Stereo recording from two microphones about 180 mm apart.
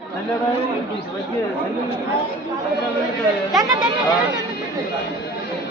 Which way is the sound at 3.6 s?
25° right (ahead or behind).